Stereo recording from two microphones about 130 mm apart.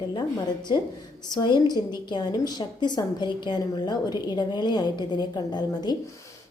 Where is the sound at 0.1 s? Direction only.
35° left (ahead or behind).